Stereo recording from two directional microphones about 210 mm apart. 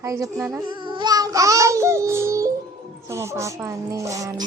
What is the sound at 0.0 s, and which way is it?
Speech, 15° right (ahead or behind).